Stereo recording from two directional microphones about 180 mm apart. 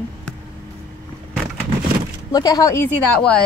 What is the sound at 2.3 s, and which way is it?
Speech, 20° left (ahead or behind).